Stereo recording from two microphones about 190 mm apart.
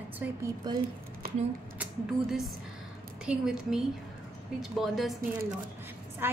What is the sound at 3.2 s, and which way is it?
A woman's voice, 5° right (ahead or behind).